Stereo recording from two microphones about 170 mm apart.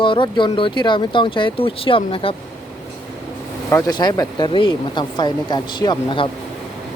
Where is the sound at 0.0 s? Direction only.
30° left (ahead or behind).